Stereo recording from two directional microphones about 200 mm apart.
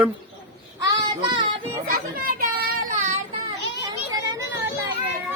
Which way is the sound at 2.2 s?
45° right (ahead or behind).